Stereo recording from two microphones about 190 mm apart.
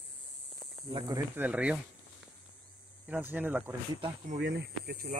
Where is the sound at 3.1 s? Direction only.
10° right (ahead or behind).